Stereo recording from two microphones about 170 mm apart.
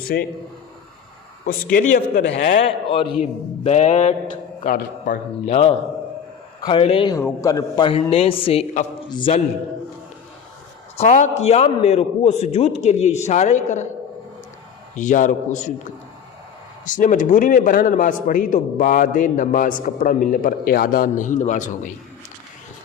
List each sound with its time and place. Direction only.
0.0 s speech: 65° left (ahead or behind)
1.5 s a man's voice: 50° left (ahead or behind)
4.6 s a man's voice: 55° left (ahead or behind)
5.5 s a man's voice: 35° left (ahead or behind)
7.1 s a man's voice: 20° left (ahead or behind)
7.9 s a man's voice: 35° left (ahead or behind)
10.9 s a man's voice: 45° left (ahead or behind)
14.9 s a man's voice: 45° left (ahead or behind)
16.8 s a man's voice: 50° left (ahead or behind)